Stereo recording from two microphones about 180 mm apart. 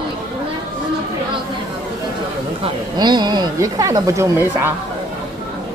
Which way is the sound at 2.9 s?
25° right (ahead or behind).